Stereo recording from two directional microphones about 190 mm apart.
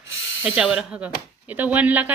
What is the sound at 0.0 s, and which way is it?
Hiss, 80° left.